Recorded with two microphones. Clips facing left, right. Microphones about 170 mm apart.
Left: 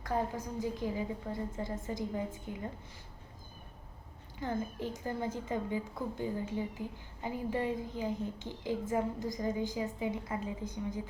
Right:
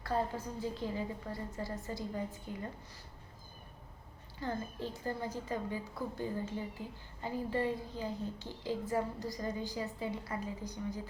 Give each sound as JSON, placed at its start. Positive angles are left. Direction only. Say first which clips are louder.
{"t": 0.1, "sound": "a woman's voice", "louder": "left 1 dB", "side_deg": 15}
{"t": 4.4, "sound": "a woman's voice", "louder": "left 3 dB", "side_deg": 15}